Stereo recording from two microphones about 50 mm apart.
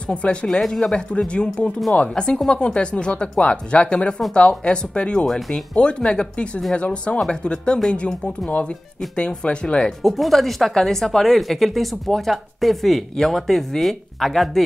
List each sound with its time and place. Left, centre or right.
0.1 s speech: left
0.6 s speech: centre
0.9 s speech: left
5.2 s speech: centre
5.8 s speech: left
10.0 s speech: centre